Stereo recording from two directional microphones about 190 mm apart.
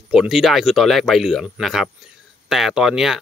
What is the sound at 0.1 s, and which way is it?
Speech, 5° right (ahead or behind).